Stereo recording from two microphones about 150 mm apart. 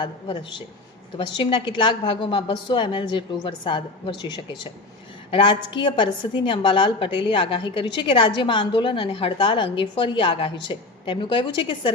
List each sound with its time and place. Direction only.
1.4 s a woman's voice: 35° left (ahead or behind)